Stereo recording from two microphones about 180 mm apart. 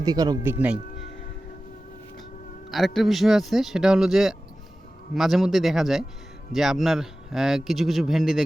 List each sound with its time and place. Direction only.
0.0 s speech: 20° right (ahead or behind)
2.6 s speech: centre (ahead or behind)